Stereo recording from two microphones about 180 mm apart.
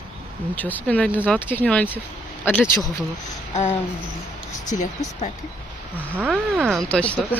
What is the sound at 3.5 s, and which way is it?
Speech, 35° left (ahead or behind).